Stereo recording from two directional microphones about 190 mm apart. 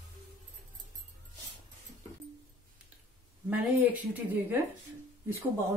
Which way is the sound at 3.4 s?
10° right (ahead or behind).